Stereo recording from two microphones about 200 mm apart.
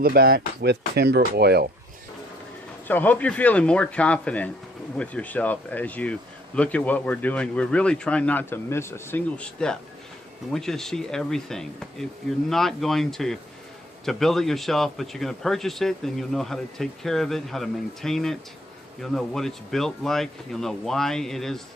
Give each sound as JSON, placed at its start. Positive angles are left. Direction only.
{"t": 0.0, "sound": "speech", "side_deg": -50}
{"t": 2.8, "sound": "a man's voice", "side_deg": 10}